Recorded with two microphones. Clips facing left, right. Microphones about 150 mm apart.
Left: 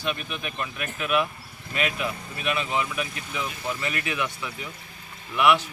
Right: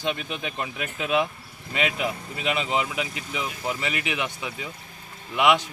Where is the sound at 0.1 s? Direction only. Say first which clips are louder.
Right 2 dB; 25° right (ahead or behind).